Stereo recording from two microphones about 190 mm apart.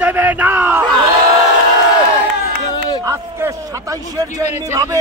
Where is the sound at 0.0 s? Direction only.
10° right (ahead or behind).